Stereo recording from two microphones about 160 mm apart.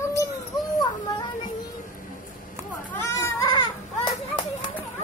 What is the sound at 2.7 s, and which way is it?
Children playing, 10° left (ahead or behind).